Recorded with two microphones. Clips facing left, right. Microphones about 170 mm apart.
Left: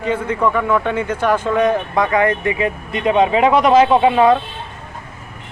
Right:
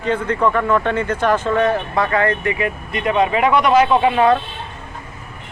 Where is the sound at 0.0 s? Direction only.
10° left (ahead or behind).